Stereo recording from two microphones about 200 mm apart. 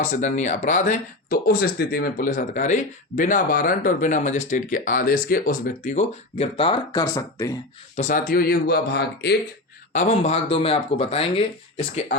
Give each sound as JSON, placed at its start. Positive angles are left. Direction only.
{"t": 0.0, "sound": "speech", "side_deg": 40}
{"t": 7.0, "sound": "speech", "side_deg": 15}
{"t": 7.9, "sound": "speech", "side_deg": 40}
{"t": 9.9, "sound": "speech", "side_deg": 35}